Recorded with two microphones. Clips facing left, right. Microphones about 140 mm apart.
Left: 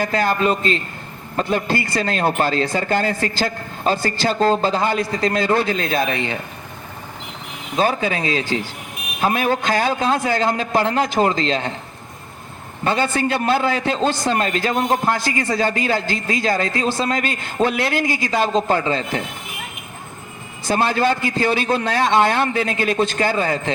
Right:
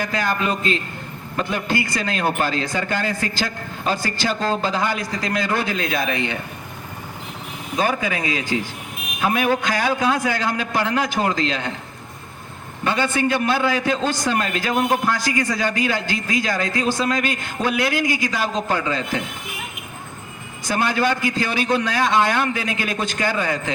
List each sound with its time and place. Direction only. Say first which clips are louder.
0.0 s a man's voice: left 4 dB; 35° left (ahead or behind)
4.4 s a man's voice: left 7 dB; 35° left (ahead or behind)
7.8 s a man's voice: left 3 dB; 30° left (ahead or behind)
12.8 s a man's voice: left 1 dB; 35° left (ahead or behind)
20.7 s a man's voice: left 2 dB; 30° left (ahead or behind)